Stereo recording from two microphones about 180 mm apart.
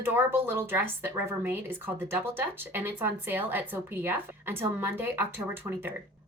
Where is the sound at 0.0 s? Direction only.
10° right (ahead or behind).